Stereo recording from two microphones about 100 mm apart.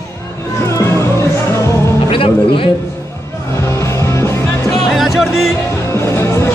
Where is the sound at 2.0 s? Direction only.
65° left (ahead or behind).